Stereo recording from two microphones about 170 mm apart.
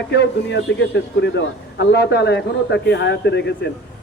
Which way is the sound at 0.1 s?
85° left.